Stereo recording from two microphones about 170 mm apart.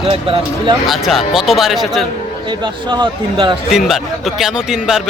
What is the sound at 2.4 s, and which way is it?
Speech, 25° right (ahead or behind).